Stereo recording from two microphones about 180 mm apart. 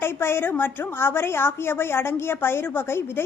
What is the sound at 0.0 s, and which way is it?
Speech, 10° left (ahead or behind).